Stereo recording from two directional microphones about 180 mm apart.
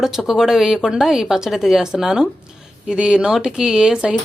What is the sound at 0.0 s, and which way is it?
Speech, centre (ahead or behind).